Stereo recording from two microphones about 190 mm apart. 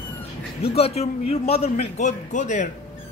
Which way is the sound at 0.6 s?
30° left (ahead or behind).